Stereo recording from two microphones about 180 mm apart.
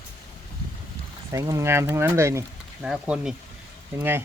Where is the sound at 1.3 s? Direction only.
20° right (ahead or behind).